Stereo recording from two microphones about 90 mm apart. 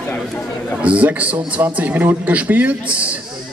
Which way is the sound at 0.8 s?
15° right (ahead or behind).